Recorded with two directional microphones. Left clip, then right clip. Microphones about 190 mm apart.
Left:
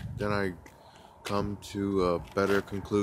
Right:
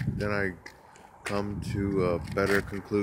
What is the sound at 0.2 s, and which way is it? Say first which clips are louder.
Speech: even; 5° left (ahead or behind).